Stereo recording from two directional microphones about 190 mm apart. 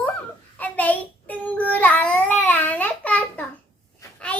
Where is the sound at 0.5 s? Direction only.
10° left (ahead or behind).